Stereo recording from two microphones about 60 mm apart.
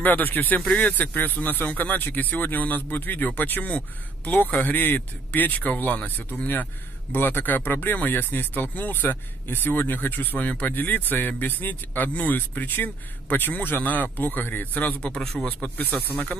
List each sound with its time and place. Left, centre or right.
0.0 s a man's voice: left